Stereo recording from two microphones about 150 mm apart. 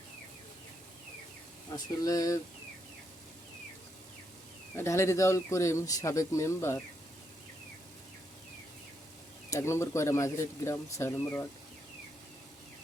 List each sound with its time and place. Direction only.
1.7 s speech: 25° left (ahead or behind)
4.8 s speech: 20° left (ahead or behind)
9.5 s speech: 20° left (ahead or behind)